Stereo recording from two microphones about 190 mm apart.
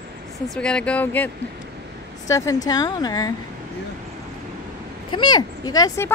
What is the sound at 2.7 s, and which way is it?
Speech, 20° left (ahead or behind).